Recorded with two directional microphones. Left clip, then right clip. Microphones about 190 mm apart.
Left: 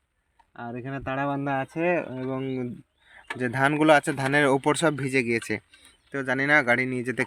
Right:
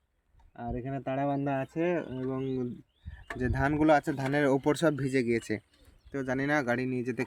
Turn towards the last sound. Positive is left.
turn(degrees=10)  # may be behind; listen again after turning